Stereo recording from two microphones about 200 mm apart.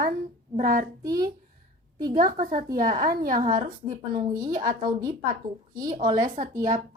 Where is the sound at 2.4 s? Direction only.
45° right (ahead or behind).